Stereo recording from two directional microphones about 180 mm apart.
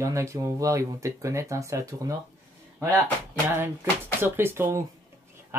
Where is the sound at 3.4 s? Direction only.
10° right (ahead or behind).